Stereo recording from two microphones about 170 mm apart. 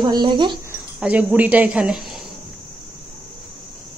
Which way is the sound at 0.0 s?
25° right (ahead or behind).